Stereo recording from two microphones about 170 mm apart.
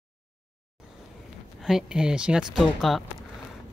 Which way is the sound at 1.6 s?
5° right (ahead or behind).